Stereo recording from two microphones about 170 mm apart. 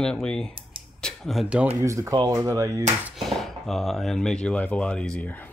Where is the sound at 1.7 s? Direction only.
20° right (ahead or behind).